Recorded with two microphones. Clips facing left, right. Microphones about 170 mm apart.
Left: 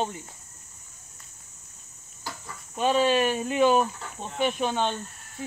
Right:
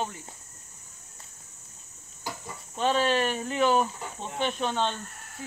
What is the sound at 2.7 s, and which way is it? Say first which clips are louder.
Speech: left 3 dB; 10° left (ahead or behind).